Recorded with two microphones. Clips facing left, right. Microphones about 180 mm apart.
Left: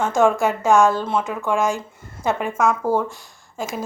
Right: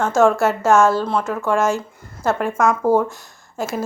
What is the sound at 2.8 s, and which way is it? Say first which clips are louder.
Speech: right 4 dB; 15° right (ahead or behind).